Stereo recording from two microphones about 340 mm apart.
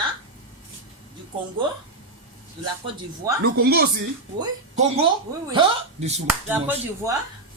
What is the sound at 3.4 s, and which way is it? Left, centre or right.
Speech, right.